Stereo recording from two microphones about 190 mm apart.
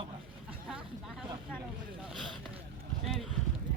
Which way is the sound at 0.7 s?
Centre (ahead or behind).